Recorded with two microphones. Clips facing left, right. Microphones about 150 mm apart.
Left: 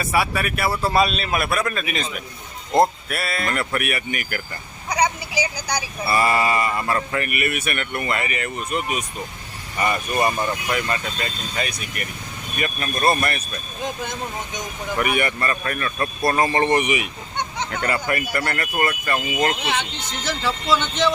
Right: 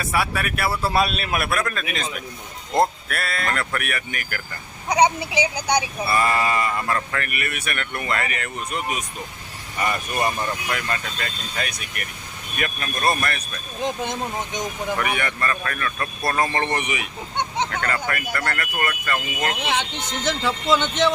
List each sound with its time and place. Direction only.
0.0 s speech: centre (ahead or behind)
4.9 s speech: 25° right (ahead or behind)
6.1 s speech: 5° left (ahead or behind)
14.9 s speech: 10° left (ahead or behind)
20.2 s speech: 20° right (ahead or behind)